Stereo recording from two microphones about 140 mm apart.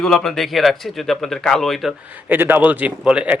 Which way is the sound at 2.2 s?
15° right (ahead or behind).